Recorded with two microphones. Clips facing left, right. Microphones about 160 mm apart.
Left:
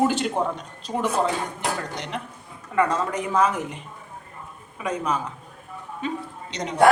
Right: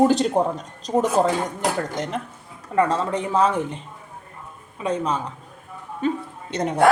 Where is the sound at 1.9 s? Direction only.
45° right (ahead or behind).